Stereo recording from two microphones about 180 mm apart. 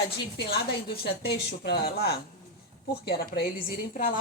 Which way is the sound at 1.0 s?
65° left (ahead or behind).